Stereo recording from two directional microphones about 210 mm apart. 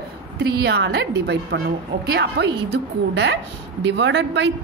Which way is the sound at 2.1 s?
55° right (ahead or behind).